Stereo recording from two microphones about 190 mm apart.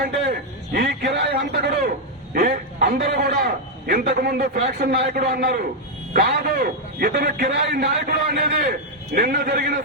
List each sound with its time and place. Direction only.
0.7 s a sound: 55° right (ahead or behind)
2.3 s a man's voice: 45° right (ahead or behind)
7.8 s a man's voice: 60° right (ahead or behind)